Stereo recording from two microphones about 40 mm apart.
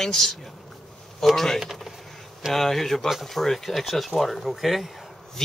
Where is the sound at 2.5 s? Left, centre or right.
Centre.